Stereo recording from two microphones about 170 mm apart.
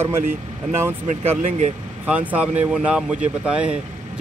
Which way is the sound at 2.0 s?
10° right (ahead or behind).